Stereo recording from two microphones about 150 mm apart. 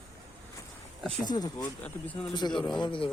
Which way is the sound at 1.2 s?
25° left (ahead or behind).